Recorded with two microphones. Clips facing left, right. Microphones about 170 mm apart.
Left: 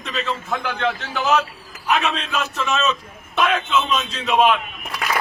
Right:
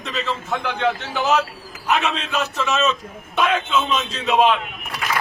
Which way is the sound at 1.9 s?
5° right (ahead or behind).